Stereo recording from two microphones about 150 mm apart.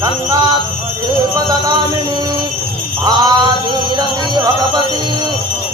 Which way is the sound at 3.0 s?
25° right (ahead or behind).